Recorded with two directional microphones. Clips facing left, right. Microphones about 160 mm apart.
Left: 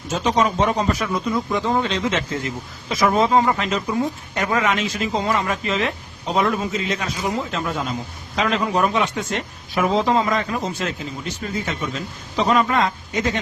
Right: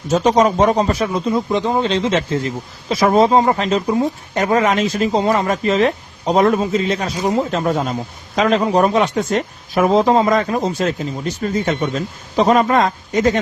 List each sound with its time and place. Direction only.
0.1 s speech: 40° right (ahead or behind); by 1.9 s 20° right (ahead or behind)
1.9 s speech: 30° right (ahead or behind)